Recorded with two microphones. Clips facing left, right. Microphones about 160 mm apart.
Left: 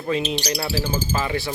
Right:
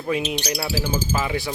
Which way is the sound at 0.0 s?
10° right (ahead or behind).